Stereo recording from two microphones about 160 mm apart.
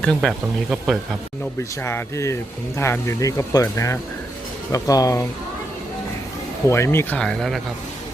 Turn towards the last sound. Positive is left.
turn(degrees=5)  # may be behind; listen again after turning